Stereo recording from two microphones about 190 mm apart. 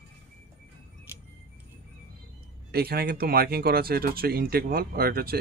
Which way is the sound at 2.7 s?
55° right (ahead or behind).